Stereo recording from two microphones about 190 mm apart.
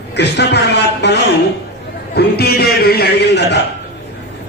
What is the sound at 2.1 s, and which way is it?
A man's voice, 55° left (ahead or behind).